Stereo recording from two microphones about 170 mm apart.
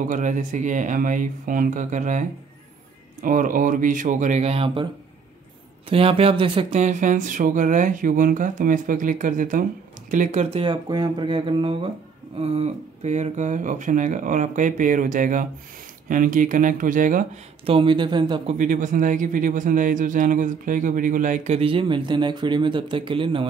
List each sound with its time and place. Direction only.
0.1 s speech: 50° right (ahead or behind); by 4.8 s 35° right (ahead or behind)
5.9 s speech: 35° right (ahead or behind); by 17.3 s 50° right (ahead or behind)
17.6 s speech: 30° right (ahead or behind)
18.6 s speech: 50° right (ahead or behind)
21.5 s speech: 30° right (ahead or behind)